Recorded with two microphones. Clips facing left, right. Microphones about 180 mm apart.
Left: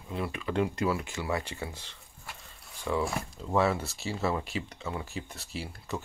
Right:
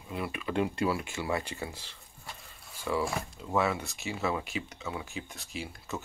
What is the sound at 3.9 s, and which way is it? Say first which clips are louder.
Speech: left 1 dB; 35° left (ahead or behind).